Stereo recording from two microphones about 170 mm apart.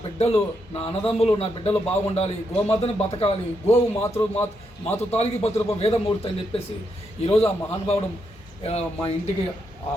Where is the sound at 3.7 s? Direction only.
15° left (ahead or behind).